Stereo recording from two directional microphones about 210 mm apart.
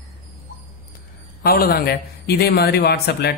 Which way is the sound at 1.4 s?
45° left (ahead or behind).